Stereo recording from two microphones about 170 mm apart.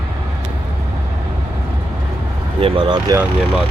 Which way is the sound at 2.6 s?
30° right (ahead or behind).